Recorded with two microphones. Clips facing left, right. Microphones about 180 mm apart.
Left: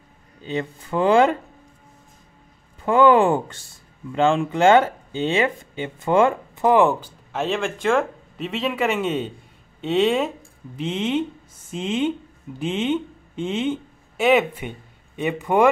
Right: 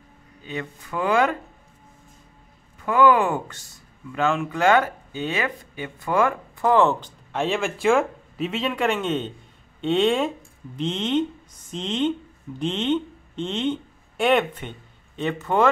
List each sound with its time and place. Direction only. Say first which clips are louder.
0.4 s speech: left 5 dB; 30° left (ahead or behind)
2.8 s speech: left 3 dB; 30° left (ahead or behind)